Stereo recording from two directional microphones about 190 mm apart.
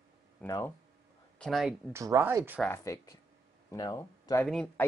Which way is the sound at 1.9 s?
15° right (ahead or behind).